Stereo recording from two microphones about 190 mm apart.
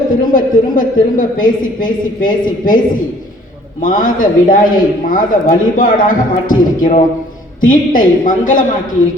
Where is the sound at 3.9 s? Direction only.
45° left (ahead or behind).